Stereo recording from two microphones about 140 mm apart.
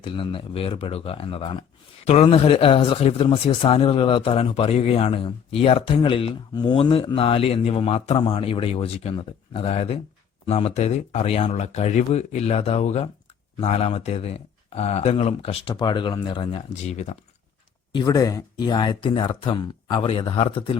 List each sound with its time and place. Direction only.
0.0 s speech: 40° left (ahead or behind)
15.7 s speech: 35° left (ahead or behind)
16.8 s speech: 55° left (ahead or behind)
17.9 s speech: 25° left (ahead or behind)